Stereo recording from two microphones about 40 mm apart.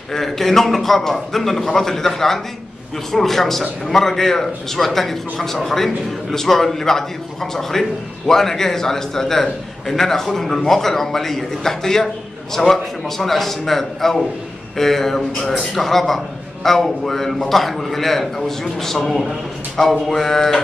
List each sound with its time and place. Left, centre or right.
0.1 s a man's voice: centre